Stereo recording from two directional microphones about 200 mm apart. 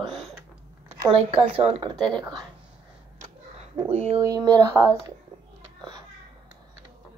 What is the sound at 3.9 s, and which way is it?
Speech, 30° right (ahead or behind).